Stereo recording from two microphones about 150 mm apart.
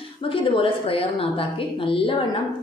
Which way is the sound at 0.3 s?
35° left (ahead or behind).